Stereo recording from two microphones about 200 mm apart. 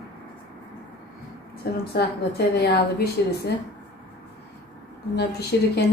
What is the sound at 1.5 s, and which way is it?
A woman's voice, 50° left (ahead or behind).